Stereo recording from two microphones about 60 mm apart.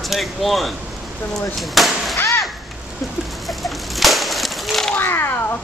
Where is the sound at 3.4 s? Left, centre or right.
Centre.